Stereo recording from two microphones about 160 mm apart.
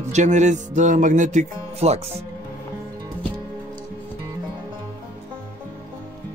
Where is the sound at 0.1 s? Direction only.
45° right (ahead or behind).